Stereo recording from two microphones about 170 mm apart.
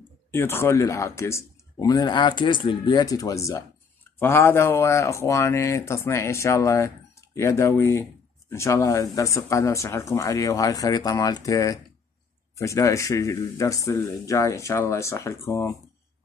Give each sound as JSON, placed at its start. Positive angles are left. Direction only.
{"t": 0.3, "sound": "speech", "side_deg": 15}